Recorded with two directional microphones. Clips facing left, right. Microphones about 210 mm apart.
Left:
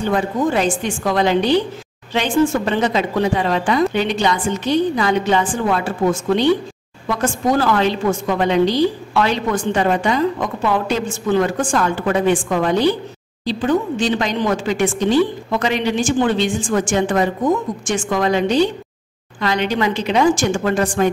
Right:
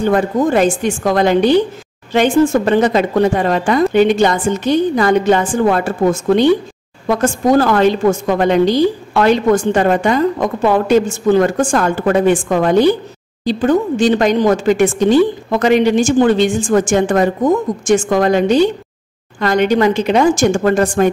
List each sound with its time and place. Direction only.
0.0 s a woman's voice: 50° right (ahead or behind)